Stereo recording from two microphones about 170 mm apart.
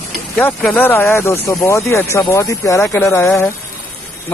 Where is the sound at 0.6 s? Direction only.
5° left (ahead or behind).